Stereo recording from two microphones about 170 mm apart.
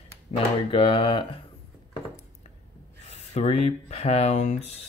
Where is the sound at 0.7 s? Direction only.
30° left (ahead or behind).